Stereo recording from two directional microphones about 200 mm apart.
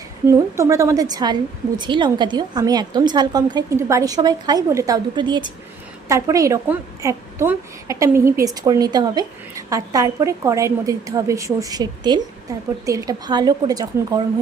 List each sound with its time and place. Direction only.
0.3 s a woman's voice: 15° right (ahead or behind)